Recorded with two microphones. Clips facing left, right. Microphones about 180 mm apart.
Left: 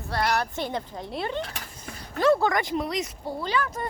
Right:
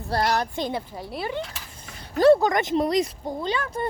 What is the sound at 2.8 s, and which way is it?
Speech, 35° right (ahead or behind).